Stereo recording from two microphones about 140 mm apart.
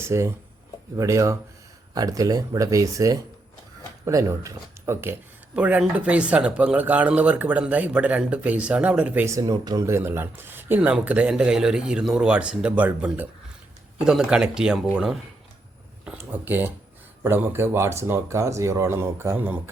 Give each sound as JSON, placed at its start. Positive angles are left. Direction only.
{"t": 0.0, "sound": "speech", "side_deg": -20}
{"t": 9.2, "sound": "speech", "side_deg": -25}